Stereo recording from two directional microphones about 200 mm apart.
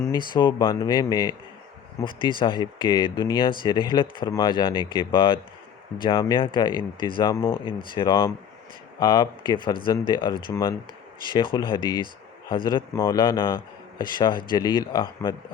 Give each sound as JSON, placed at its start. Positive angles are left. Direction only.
{"t": 0.3, "sound": "speech", "side_deg": 20}